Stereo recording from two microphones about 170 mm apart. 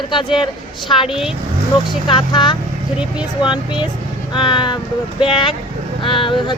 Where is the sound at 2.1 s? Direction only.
30° left (ahead or behind).